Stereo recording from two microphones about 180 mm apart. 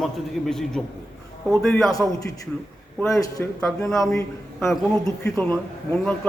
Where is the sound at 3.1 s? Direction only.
15° left (ahead or behind).